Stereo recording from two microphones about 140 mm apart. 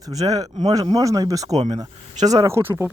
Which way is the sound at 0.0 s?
25° right (ahead or behind).